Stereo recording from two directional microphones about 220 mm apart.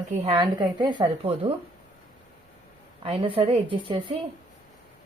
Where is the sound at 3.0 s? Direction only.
25° right (ahead or behind).